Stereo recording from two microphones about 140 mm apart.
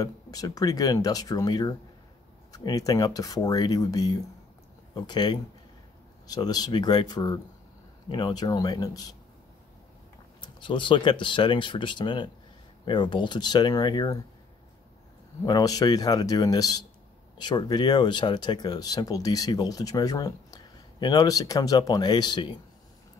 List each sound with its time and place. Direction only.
0.0 s speech: 25° left (ahead or behind)
10.4 s speech: 35° left (ahead or behind)
15.4 s speech: 30° left (ahead or behind)